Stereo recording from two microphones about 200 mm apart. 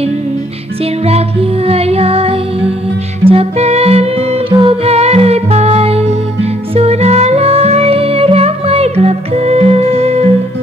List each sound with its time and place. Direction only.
1.7 s music: 30° right (ahead or behind)